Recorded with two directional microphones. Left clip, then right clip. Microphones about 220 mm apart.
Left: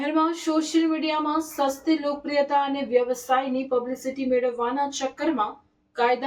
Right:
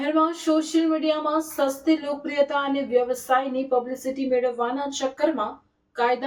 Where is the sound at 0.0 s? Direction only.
Centre (ahead or behind).